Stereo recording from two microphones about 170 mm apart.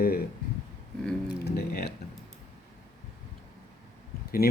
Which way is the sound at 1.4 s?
70° left (ahead or behind).